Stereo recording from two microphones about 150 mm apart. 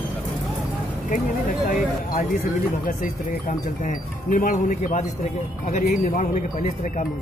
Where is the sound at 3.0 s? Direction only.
65° left (ahead or behind).